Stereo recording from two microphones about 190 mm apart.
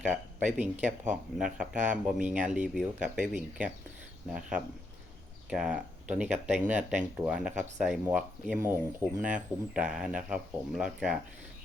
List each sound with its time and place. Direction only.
0.4 s speech: 40° right (ahead or behind)
1.1 s speech: 5° right (ahead or behind)